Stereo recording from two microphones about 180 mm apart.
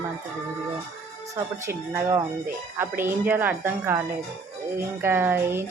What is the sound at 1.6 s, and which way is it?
Speech, 15° right (ahead or behind).